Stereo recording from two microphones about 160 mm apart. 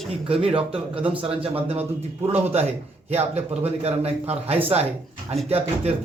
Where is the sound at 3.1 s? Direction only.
40° right (ahead or behind).